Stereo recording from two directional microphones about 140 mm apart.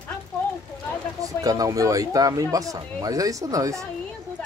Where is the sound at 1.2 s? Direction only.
25° right (ahead or behind).